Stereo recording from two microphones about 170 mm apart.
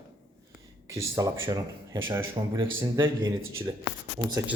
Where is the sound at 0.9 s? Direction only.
20° right (ahead or behind).